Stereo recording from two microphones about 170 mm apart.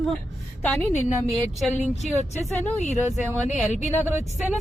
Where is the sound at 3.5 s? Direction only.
45° left (ahead or behind).